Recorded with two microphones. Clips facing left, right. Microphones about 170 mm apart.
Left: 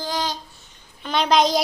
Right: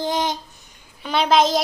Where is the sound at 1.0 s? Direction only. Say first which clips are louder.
Right 1 dB; 5° right (ahead or behind).